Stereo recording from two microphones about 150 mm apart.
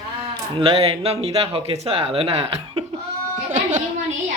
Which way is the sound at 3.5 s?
55° right (ahead or behind).